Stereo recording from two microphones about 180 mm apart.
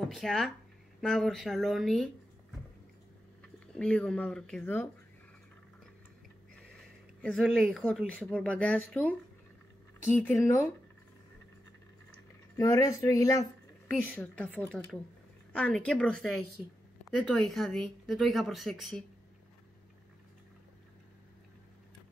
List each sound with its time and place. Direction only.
0.1 s speech: centre (ahead or behind)
3.5 s speech: 5° left (ahead or behind)
7.2 s speech: centre (ahead or behind)
10.1 s speech: 10° left (ahead or behind)
12.5 s speech: 20° left (ahead or behind)
14.1 s speech: 5° left (ahead or behind)